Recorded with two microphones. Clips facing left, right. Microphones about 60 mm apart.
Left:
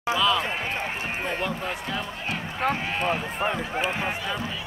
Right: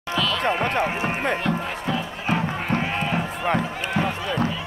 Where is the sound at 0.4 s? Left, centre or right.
Right.